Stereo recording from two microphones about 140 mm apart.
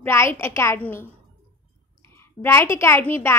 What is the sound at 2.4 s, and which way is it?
Speech, 20° left (ahead or behind).